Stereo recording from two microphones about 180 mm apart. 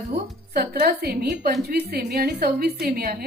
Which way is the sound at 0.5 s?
60° right (ahead or behind).